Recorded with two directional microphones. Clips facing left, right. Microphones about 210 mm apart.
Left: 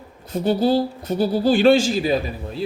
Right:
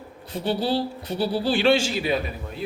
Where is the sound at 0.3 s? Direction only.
45° left (ahead or behind).